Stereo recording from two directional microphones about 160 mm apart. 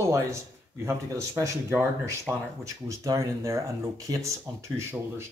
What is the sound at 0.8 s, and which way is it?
Speech, 15° right (ahead or behind).